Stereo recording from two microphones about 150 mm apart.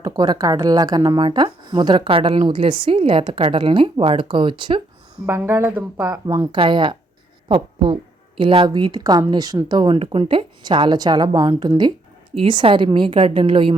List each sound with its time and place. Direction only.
0.0 s speech: 25° right (ahead or behind)
5.2 s speech: 15° right (ahead or behind); by 13.7 s 35° right (ahead or behind)